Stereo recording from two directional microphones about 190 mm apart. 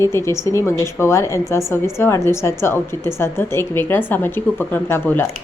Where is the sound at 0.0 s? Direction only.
15° left (ahead or behind).